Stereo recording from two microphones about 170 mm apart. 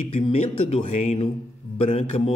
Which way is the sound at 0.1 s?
35° left (ahead or behind).